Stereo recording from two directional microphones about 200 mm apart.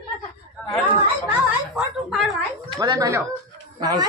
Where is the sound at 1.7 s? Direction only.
Centre (ahead or behind).